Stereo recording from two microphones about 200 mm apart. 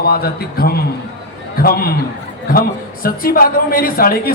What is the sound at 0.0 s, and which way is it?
A man's voice, 50° left (ahead or behind).